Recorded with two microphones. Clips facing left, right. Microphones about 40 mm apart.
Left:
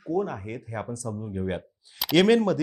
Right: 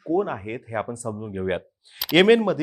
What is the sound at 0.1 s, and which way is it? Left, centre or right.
Speech, right.